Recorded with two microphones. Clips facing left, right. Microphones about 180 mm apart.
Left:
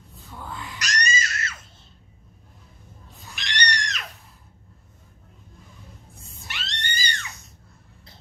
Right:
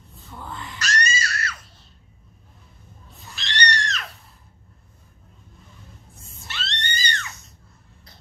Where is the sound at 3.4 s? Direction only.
15° left (ahead or behind).